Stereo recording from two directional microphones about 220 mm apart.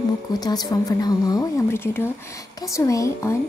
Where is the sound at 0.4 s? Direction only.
15° left (ahead or behind).